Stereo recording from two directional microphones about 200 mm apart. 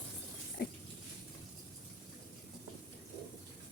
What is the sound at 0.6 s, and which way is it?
Dog, 50° left (ahead or behind).